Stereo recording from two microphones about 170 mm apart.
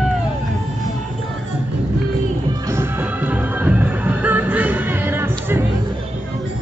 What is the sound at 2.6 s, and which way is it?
Music, 15° right (ahead or behind).